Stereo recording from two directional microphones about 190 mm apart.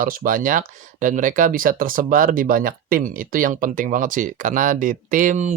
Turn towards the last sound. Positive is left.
turn(degrees=-40)  # may be behind; listen again after turning